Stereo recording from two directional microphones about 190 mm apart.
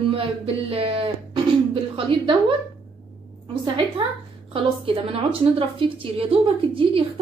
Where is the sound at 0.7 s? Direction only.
30° right (ahead or behind).